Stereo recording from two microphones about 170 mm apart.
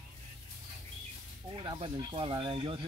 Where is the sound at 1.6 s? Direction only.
25° right (ahead or behind).